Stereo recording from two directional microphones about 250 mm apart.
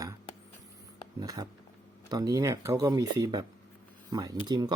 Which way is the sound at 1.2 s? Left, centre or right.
Centre.